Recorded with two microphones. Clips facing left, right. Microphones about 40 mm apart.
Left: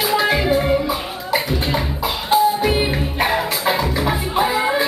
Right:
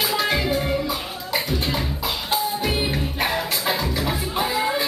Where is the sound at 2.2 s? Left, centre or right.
Centre.